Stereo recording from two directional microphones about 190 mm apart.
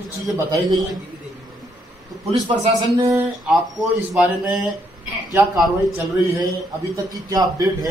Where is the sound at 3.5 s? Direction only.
Centre (ahead or behind).